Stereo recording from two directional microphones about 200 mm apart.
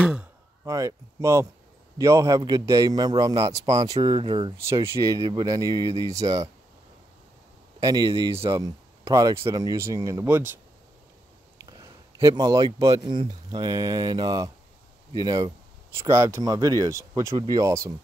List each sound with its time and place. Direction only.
0.0 s a sound: 5° right (ahead or behind)
0.7 s speech: 15° right (ahead or behind)
4.6 s speech: 15° right (ahead or behind)
7.8 s a man's voice: 20° right (ahead or behind)